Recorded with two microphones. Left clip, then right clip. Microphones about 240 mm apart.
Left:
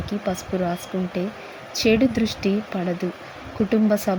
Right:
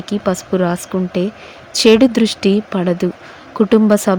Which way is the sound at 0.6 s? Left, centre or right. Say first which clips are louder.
Right 8 dB; centre.